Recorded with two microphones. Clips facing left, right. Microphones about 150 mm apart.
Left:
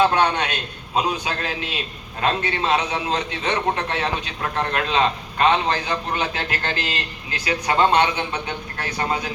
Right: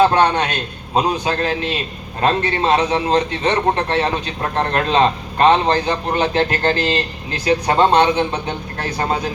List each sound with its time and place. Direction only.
0.0 s a man's voice: 40° right (ahead or behind)